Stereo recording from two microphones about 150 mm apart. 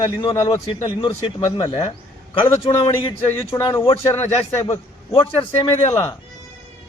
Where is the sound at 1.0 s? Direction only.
35° left (ahead or behind).